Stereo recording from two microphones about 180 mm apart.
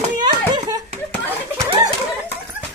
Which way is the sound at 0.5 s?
20° right (ahead or behind).